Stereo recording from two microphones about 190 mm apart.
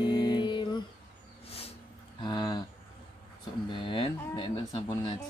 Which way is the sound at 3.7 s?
25° left (ahead or behind).